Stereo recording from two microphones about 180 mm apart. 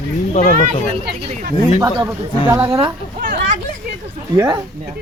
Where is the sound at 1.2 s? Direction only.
45° right (ahead or behind).